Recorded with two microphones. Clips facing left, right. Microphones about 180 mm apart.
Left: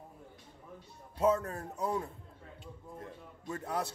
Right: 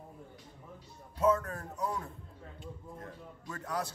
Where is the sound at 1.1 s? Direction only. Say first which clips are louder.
Even; 25° left (ahead or behind).